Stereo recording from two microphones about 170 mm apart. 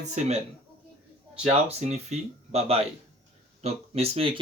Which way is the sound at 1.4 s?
40° right (ahead or behind).